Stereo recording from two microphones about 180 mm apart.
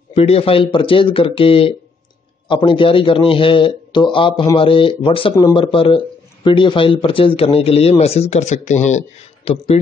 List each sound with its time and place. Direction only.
0.1 s a man's voice: 35° left (ahead or behind)